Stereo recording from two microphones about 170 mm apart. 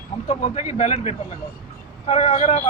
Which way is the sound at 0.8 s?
45° left (ahead or behind).